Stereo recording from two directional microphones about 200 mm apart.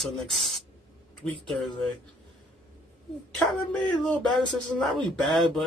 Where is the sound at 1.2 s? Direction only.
30° right (ahead or behind).